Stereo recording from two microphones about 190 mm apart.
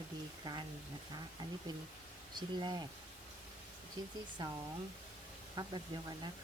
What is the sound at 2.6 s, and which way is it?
Speech, 25° right (ahead or behind).